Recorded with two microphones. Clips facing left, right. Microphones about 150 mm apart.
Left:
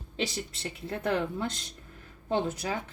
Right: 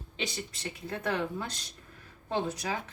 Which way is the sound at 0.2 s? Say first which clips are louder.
Left 4 dB; 30° left (ahead or behind).